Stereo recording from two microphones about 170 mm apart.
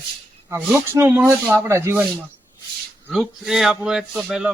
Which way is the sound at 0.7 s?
15° right (ahead or behind).